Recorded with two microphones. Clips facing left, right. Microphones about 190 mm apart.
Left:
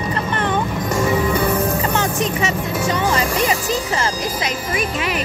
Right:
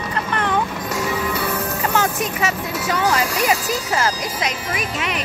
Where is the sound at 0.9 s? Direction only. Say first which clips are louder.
Left 6 dB; 50° left (ahead or behind).